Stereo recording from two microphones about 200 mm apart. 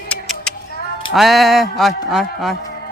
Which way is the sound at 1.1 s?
Centre (ahead or behind).